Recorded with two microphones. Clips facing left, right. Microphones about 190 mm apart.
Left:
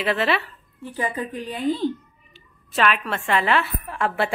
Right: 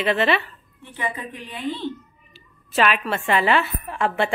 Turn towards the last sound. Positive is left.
turn(degrees=0)  # may be behind; listen again after turning